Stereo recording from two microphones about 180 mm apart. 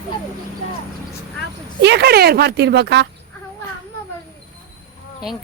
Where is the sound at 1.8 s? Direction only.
70° right (ahead or behind).